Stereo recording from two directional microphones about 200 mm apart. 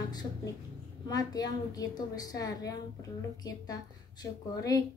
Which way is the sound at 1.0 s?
20° left (ahead or behind).